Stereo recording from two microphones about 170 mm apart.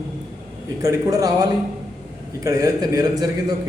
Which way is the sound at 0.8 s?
20° right (ahead or behind).